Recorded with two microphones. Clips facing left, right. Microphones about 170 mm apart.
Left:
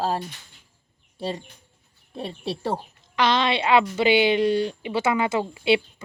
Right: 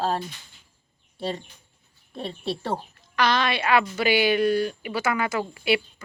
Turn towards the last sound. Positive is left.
turn(degrees=25)  # may be behind; listen again after turning